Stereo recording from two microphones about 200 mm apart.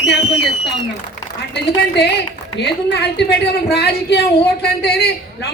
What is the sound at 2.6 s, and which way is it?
A woman's voice, 55° left (ahead or behind).